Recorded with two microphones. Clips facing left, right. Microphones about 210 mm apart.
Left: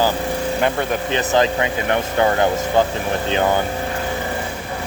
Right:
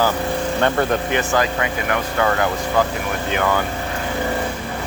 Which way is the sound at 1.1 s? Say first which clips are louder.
Left 2 dB; 20° left (ahead or behind).